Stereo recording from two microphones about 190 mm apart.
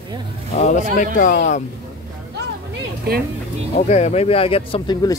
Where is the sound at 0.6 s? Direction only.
40° left (ahead or behind).